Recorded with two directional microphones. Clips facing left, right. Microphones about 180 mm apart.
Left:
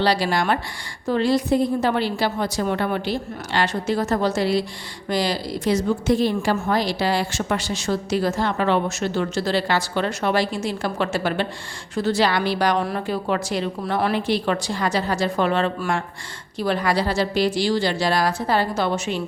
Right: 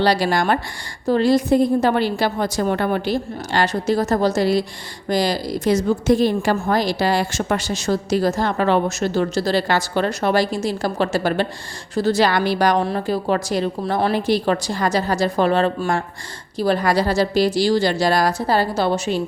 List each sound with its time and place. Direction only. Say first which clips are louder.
0.0 s a woman's voice: right 3 dB; 45° right (ahead or behind)
12.8 s a woman's voice: right 3 dB; 30° right (ahead or behind)